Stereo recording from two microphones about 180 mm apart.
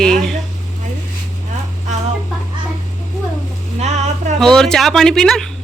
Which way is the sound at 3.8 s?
40° right (ahead or behind).